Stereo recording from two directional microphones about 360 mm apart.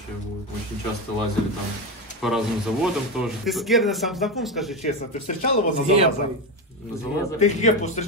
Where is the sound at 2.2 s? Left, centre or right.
Centre.